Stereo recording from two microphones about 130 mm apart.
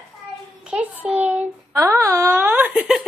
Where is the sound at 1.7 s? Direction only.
25° right (ahead or behind); by 3.0 s 10° right (ahead or behind).